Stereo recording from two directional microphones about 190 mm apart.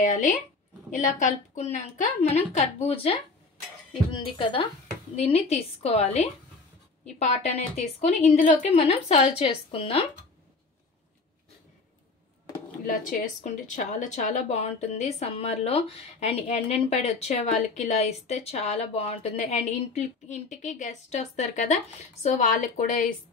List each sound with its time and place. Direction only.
0.0 s a woman's voice: 40° left (ahead or behind)
7.2 s a woman's voice: 35° left (ahead or behind)
13.4 s speech: 40° left (ahead or behind)